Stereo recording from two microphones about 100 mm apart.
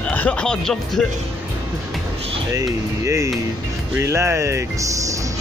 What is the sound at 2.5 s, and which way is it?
Speech, 30° right (ahead or behind).